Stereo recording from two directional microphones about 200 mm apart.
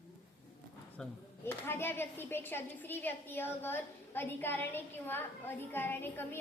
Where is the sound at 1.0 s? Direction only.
5° left (ahead or behind).